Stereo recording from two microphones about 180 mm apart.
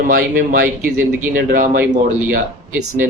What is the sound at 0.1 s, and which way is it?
Speech, 50° right (ahead or behind).